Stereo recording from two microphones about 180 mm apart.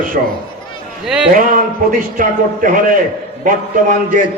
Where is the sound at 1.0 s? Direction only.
5° right (ahead or behind).